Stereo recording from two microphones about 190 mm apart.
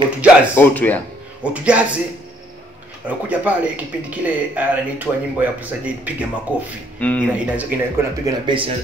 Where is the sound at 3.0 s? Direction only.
5° right (ahead or behind).